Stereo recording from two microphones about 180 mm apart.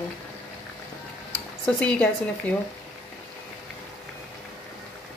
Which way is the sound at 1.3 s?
5° left (ahead or behind).